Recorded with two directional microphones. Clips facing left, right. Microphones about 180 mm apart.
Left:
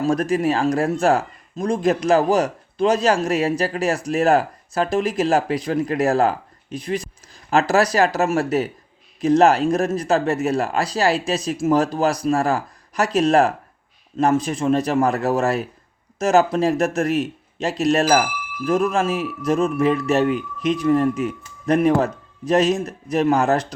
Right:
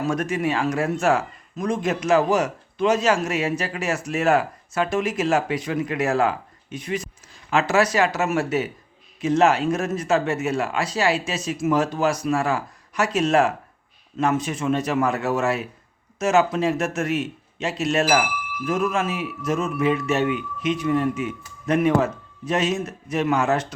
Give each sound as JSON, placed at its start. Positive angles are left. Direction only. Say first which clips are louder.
{"t": 0.0, "sound": "speech", "louder": "left 4 dB", "side_deg": 35}